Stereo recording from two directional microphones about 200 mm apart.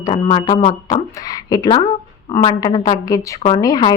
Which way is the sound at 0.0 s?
25° left (ahead or behind).